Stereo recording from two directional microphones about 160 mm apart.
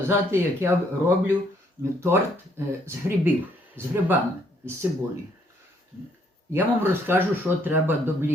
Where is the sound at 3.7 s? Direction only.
15° right (ahead or behind).